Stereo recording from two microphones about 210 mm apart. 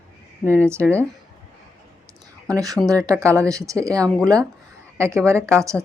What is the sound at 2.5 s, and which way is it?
Speech, 15° right (ahead or behind).